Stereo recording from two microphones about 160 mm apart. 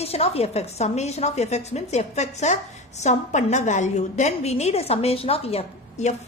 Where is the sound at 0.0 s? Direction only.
40° left (ahead or behind).